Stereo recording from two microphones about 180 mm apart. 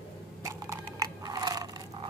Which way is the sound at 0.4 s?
20° right (ahead or behind).